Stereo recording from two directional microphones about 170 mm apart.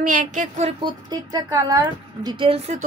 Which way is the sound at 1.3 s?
20° right (ahead or behind).